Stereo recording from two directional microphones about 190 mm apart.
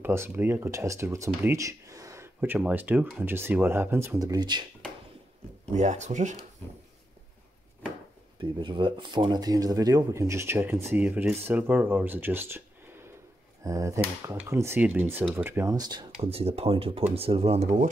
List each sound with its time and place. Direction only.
0.0 s speech: 15° right (ahead or behind)
5.7 s speech: 40° right (ahead or behind)
8.4 s speech: 25° right (ahead or behind)